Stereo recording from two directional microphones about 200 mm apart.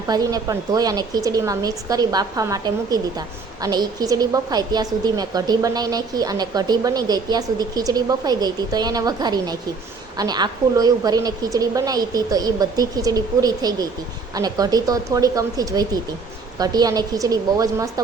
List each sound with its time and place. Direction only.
0.1 s a woman's voice: 20° right (ahead or behind)